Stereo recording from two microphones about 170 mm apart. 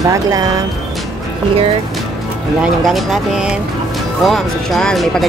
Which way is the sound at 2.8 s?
Centre (ahead or behind).